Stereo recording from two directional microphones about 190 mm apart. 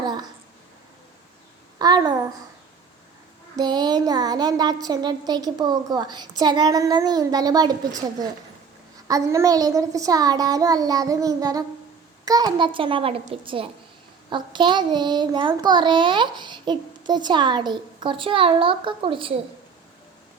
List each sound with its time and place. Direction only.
0.0 s speech: 20° right (ahead or behind)
1.8 s child singing: 20° right (ahead or behind)
3.5 s child singing: 20° right (ahead or behind)